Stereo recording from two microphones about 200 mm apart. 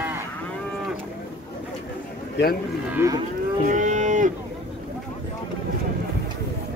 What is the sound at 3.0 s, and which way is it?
Livestock, 10° right (ahead or behind).